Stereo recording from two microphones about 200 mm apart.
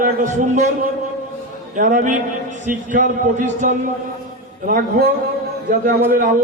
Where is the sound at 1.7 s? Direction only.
40° right (ahead or behind).